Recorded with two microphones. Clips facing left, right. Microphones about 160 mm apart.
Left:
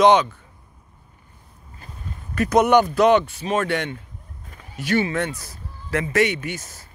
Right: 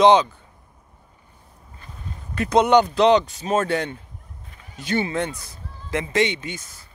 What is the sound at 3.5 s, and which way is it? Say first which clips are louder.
Speech: right 1 dB; 35° right (ahead or behind).